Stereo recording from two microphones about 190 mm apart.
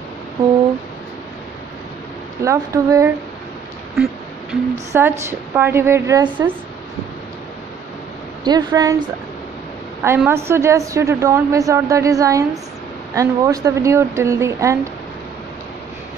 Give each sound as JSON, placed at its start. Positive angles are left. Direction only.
{"t": 2.4, "sound": "a woman's voice", "side_deg": -15}
{"t": 4.5, "sound": "a woman's voice", "side_deg": -10}
{"t": 8.5, "sound": "a woman's voice", "side_deg": -20}
{"t": 10.0, "sound": "a woman's voice", "side_deg": -10}